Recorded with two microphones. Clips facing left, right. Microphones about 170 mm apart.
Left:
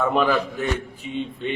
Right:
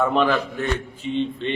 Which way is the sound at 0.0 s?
5° left (ahead or behind).